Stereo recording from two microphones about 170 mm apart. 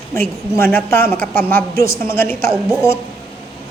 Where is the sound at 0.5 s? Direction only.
10° left (ahead or behind).